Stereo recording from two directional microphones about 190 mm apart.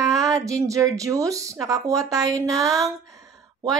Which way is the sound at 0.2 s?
15° right (ahead or behind).